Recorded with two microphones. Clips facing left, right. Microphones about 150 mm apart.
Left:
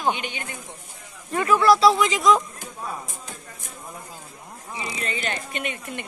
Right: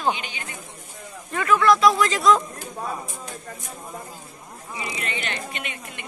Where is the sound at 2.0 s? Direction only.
15° left (ahead or behind).